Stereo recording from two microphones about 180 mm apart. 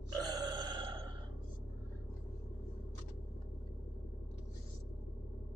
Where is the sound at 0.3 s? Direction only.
25° right (ahead or behind).